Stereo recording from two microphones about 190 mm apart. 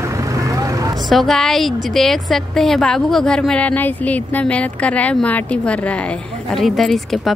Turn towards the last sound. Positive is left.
turn(degrees=0)  # may be behind; listen again after turning